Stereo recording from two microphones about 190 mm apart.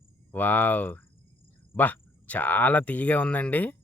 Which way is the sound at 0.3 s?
10° left (ahead or behind).